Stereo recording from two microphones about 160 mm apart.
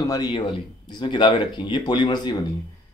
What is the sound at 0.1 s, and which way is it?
Speech, 25° left (ahead or behind).